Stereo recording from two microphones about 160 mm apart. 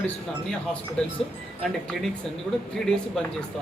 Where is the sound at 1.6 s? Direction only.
Centre (ahead or behind).